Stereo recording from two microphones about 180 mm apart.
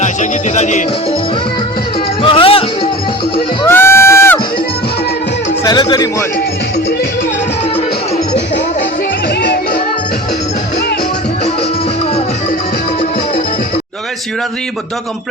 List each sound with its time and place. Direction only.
0.0 s music: 40° left (ahead or behind)
2.2 s music: 30° left (ahead or behind)
3.7 s crowd: 15° left (ahead or behind)
5.6 s speech: 20° left (ahead or behind)